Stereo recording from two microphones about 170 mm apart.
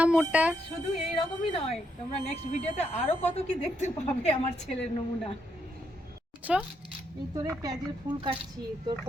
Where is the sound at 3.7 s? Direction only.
40° left (ahead or behind).